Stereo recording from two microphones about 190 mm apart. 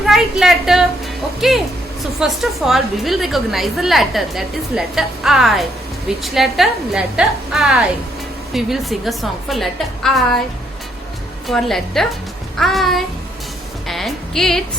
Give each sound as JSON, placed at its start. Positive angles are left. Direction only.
{"t": 0.0, "sound": "a woman's voice", "side_deg": 0}
{"t": 11.4, "sound": "a woman's voice", "side_deg": 0}
{"t": 13.8, "sound": "music", "side_deg": 0}